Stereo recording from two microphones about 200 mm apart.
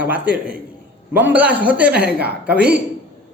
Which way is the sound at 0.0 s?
5° right (ahead or behind).